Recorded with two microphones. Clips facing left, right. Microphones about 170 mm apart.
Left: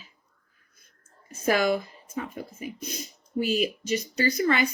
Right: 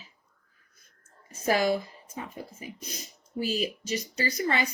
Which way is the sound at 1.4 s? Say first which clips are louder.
Left 2 dB; 35° right (ahead or behind).